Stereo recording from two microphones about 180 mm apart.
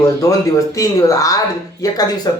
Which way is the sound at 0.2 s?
20° left (ahead or behind).